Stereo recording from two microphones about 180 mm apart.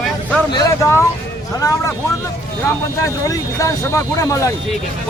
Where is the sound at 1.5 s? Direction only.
20° left (ahead or behind).